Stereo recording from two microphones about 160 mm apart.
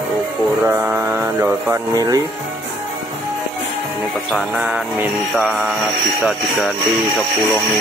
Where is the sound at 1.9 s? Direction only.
25° right (ahead or behind).